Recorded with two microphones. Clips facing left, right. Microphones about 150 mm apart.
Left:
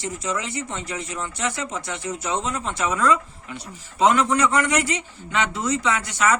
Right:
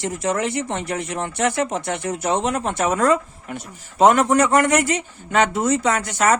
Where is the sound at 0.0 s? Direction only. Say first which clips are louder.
Right 6 dB; 60° right (ahead or behind).